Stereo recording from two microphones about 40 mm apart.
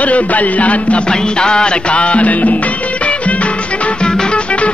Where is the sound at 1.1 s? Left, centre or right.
Left.